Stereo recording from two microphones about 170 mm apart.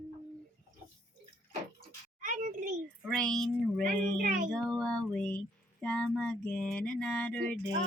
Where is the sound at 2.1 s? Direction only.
50° right (ahead or behind).